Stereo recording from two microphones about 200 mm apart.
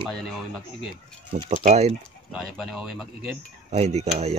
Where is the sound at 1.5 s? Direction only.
35° right (ahead or behind).